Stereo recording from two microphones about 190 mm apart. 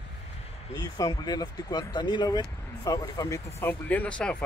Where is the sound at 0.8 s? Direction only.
20° left (ahead or behind).